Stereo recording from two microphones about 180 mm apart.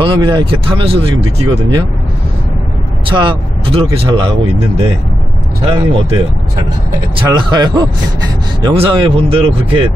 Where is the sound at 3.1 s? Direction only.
30° right (ahead or behind).